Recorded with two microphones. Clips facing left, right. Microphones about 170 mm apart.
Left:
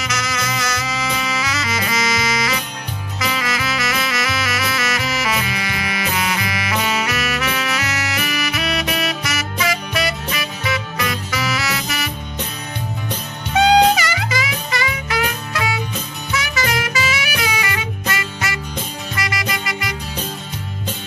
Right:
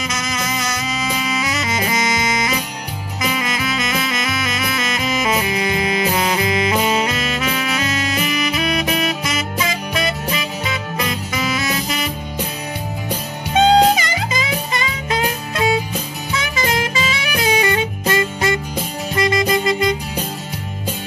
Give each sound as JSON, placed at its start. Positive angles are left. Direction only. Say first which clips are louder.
{"t": 0.0, "sound": "music", "louder": "even", "side_deg": -25}
{"t": 3.2, "sound": "saxophone", "louder": "right 1 dB", "side_deg": -20}
{"t": 13.6, "sound": "music", "louder": "right 1 dB", "side_deg": -25}
{"t": 16.3, "sound": "saxophone", "louder": "even", "side_deg": -30}
{"t": 19.1, "sound": "music", "louder": "right 9 dB", "side_deg": -25}